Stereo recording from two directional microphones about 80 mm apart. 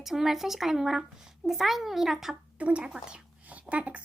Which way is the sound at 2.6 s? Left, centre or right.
Centre.